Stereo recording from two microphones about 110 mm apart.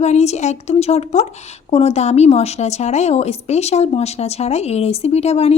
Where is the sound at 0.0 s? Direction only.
90° left.